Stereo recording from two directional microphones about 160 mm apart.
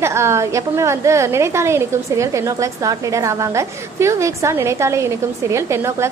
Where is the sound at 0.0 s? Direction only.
15° right (ahead or behind).